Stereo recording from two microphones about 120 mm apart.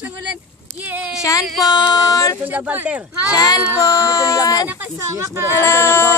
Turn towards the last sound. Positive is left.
turn(degrees=20)  # may be behind; listen again after turning